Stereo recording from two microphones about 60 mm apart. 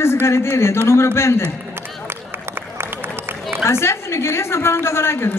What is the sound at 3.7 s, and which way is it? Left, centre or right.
A woman's voice, left.